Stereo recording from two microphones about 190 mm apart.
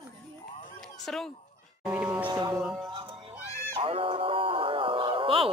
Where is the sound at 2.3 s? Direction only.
20° right (ahead or behind).